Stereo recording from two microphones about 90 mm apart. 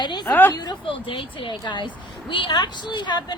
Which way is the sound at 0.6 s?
65° left (ahead or behind).